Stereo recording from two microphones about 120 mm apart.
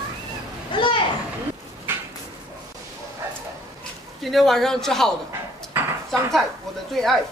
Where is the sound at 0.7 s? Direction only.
45° left (ahead or behind).